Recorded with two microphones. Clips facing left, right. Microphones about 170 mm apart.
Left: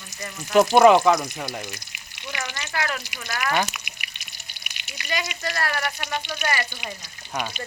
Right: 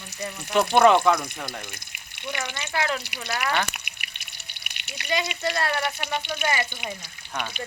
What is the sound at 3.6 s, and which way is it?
Water, 60° right (ahead or behind).